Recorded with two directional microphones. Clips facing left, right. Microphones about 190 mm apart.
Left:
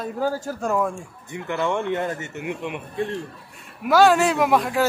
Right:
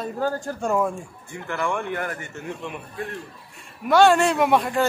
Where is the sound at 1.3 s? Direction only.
20° left (ahead or behind).